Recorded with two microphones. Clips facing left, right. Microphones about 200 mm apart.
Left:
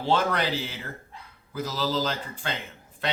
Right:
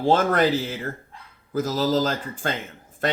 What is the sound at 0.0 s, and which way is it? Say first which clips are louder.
Speech: right 6 dB; 45° right (ahead or behind).